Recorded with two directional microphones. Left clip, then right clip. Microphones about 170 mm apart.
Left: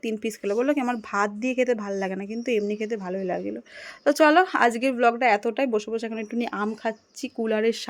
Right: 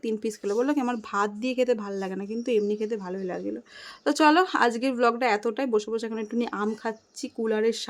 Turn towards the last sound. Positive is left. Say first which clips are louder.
# left 1 dB
turn(degrees=15)  # may be behind; listen again after turning